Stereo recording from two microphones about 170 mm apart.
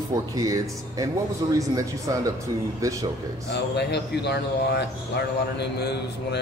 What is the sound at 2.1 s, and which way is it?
Speech, 20° right (ahead or behind).